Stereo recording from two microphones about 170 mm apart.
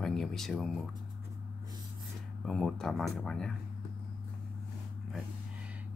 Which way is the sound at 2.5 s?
Centre (ahead or behind).